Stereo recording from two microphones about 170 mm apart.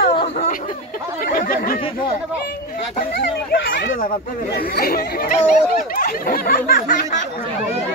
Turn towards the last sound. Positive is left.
turn(degrees=55)  # may be behind; listen again after turning